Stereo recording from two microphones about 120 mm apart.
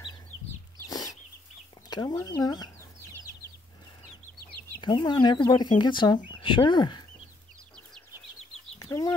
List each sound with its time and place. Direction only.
0.8 s chicken: 30° left (ahead or behind)
1.9 s speech: 35° left (ahead or behind)
4.8 s speech: 40° left (ahead or behind)
8.7 s chicken: 30° left (ahead or behind)